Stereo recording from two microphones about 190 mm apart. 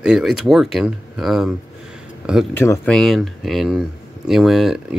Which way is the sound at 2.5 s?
10° left (ahead or behind).